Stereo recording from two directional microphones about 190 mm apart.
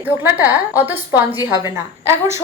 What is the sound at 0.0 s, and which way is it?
A woman's voice, 10° right (ahead or behind).